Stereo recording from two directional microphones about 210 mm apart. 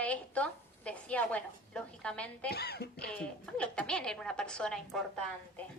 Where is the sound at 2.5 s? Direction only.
50° left (ahead or behind).